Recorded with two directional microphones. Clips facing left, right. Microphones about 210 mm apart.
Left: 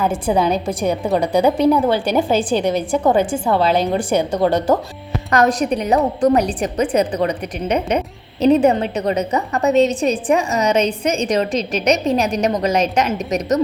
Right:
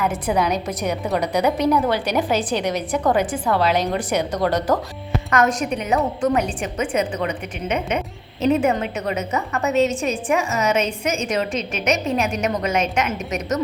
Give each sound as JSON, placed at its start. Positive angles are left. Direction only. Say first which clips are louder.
{"t": 0.0, "sound": "a woman's voice", "louder": "left 4 dB", "side_deg": 30}